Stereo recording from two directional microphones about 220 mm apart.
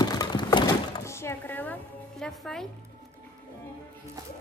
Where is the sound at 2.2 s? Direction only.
Centre (ahead or behind).